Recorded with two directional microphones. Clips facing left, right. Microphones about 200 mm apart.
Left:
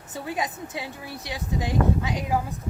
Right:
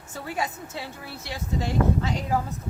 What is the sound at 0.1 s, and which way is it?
A woman's voice, 15° left (ahead or behind).